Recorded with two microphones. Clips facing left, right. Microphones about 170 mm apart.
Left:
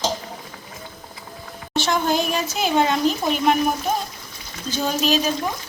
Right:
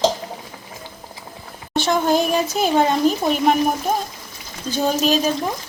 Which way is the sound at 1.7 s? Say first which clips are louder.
Right 3 dB; 50° right (ahead or behind).